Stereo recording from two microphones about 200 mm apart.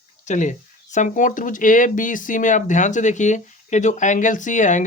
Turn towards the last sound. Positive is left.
turn(degrees=40)  # may be behind; listen again after turning